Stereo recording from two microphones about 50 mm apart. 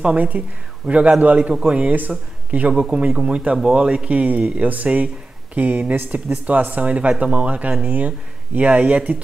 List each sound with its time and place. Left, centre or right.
0.0 s speech: right
1.8 s speech: right
2.7 s speech: centre